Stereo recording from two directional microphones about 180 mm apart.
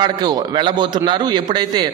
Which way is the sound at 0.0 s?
20° right (ahead or behind).